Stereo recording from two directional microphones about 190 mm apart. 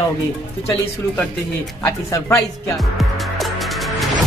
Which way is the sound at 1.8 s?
15° left (ahead or behind).